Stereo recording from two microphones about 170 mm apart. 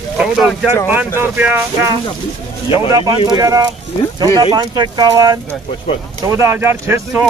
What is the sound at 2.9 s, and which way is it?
Speech, 25° right (ahead or behind).